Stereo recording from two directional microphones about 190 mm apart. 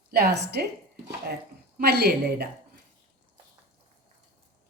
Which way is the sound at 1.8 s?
60° right (ahead or behind).